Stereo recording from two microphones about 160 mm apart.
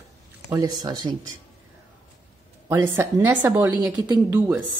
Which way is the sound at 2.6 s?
15° right (ahead or behind).